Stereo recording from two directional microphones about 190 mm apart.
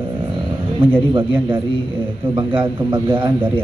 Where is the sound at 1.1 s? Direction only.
25° right (ahead or behind).